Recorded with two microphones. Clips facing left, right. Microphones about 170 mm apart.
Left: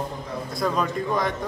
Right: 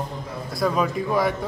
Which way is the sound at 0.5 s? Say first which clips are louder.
Right 3 dB; 5° right (ahead or behind).